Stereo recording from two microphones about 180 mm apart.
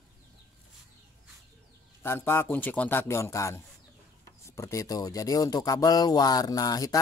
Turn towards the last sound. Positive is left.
turn(degrees=20)  # may be behind; listen again after turning